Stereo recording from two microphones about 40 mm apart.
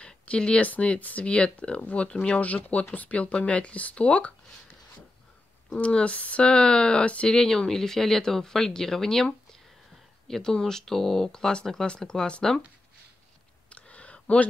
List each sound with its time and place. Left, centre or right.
0.0 s a sound: left
0.7 s speech: left
1.8 s speech: left
5.8 s speech: left
6.4 s speech: left
13.7 s a sound: left